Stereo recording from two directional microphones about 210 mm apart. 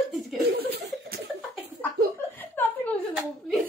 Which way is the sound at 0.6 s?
50° right (ahead or behind).